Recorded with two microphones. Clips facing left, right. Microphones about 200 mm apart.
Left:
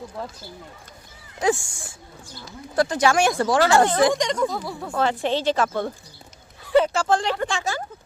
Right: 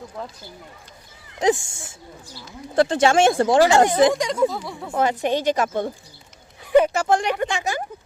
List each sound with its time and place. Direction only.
0.2 s speech: centre (ahead or behind)
1.4 s speech: 20° right (ahead or behind)
3.6 s speech: 15° right (ahead or behind)
4.9 s speech: 15° right (ahead or behind)